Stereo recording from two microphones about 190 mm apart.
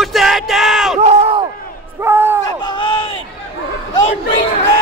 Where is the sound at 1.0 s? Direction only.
35° right (ahead or behind).